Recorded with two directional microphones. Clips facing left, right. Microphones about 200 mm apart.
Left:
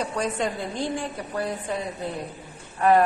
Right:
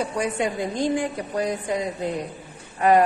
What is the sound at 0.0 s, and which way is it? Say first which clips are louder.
A woman's voice: right 2 dB; 10° right (ahead or behind).